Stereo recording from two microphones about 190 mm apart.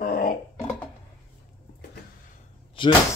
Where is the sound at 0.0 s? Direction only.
45° left (ahead or behind).